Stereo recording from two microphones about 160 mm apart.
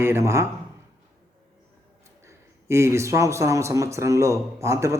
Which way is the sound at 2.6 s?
15° right (ahead or behind).